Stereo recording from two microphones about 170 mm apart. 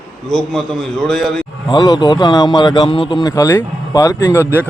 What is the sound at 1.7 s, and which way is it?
A man's voice, 25° left (ahead or behind).